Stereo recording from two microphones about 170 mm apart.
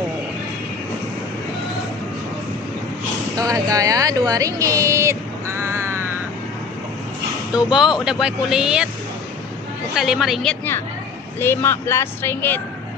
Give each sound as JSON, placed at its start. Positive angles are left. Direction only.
{"t": 3.3, "sound": "speech", "side_deg": -20}
{"t": 7.5, "sound": "speech", "side_deg": -5}
{"t": 9.9, "sound": "speech", "side_deg": 0}